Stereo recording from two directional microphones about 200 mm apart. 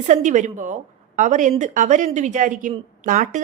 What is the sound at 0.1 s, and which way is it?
Speech, 35° right (ahead or behind).